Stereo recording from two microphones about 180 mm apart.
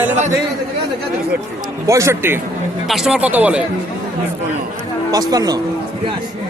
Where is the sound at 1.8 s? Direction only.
15° right (ahead or behind).